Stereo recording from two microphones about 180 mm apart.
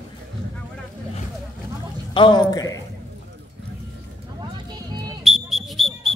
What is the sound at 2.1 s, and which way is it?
Speech, 25° left (ahead or behind).